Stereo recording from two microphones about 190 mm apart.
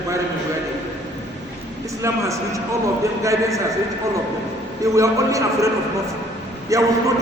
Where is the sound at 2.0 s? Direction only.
15° right (ahead or behind).